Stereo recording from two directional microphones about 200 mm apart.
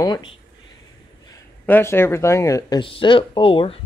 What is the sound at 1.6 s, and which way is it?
Speech, 10° left (ahead or behind).